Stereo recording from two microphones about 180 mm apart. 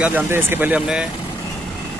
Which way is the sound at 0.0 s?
10° right (ahead or behind).